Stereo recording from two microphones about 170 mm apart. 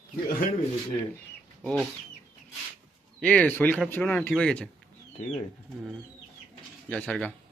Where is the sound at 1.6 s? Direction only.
Centre (ahead or behind).